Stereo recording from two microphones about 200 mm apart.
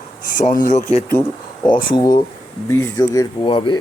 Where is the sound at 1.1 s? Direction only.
20° left (ahead or behind).